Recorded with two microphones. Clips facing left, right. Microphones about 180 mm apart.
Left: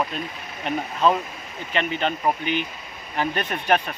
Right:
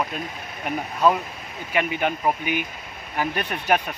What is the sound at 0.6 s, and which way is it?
Speech, 5° right (ahead or behind).